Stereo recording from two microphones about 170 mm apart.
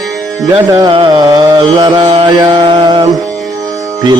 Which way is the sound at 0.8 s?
25° right (ahead or behind).